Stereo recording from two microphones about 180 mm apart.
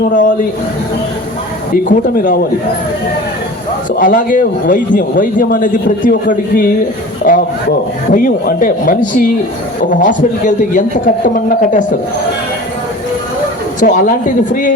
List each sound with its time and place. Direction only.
0.0 s a man's voice: 50° left (ahead or behind)
1.7 s a man's voice: 50° left (ahead or behind)
3.9 s a man's voice: 50° left (ahead or behind)
7.3 s rub: 50° left (ahead or behind)
8.1 s a man's voice: 50° left (ahead or behind)
13.7 s a man's voice: 45° left (ahead or behind)